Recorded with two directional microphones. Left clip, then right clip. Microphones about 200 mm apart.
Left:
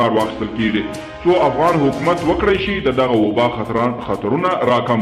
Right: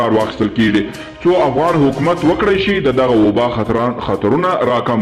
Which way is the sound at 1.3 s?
35° right (ahead or behind).